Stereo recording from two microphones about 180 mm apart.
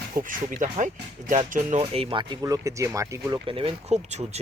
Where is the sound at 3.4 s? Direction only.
30° right (ahead or behind).